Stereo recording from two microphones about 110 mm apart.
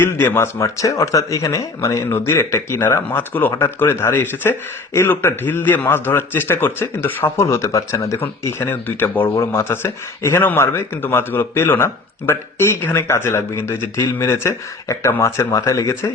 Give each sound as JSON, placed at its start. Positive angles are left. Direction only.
{"t": 0.0, "sound": "a man's voice", "side_deg": 20}